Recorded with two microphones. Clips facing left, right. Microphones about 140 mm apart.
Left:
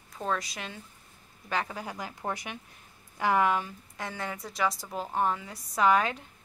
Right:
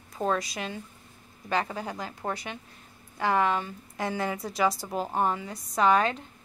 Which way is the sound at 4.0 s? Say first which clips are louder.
Right 6 dB; 5° right (ahead or behind).